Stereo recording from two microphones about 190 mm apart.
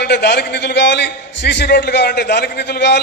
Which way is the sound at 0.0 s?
60° left (ahead or behind).